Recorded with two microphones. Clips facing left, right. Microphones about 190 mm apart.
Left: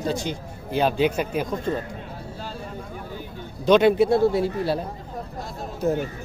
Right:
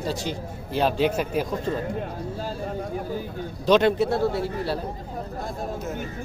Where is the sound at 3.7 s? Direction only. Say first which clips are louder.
Left 3 dB; 5° left (ahead or behind).